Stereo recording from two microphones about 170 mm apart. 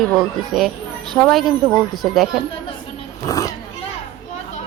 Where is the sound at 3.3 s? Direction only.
20° left (ahead or behind).